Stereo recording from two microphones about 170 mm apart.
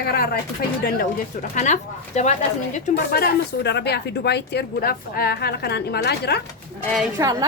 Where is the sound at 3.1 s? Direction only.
75° left (ahead or behind).